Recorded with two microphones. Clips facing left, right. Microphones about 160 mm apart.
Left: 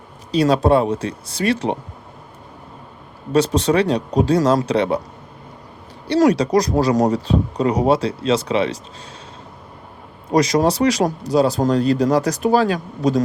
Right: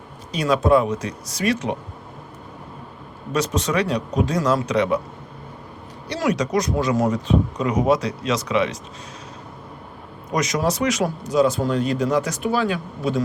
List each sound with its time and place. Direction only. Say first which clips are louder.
0.3 s speech: left 3 dB; 35° left (ahead or behind)
3.3 s speech: left 6 dB; 30° left (ahead or behind)
6.1 s speech: left 7 dB; 35° left (ahead or behind)
10.3 s speech: left 6 dB; 35° left (ahead or behind)